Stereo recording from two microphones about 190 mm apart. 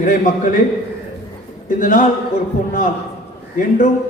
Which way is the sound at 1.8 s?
40° left (ahead or behind).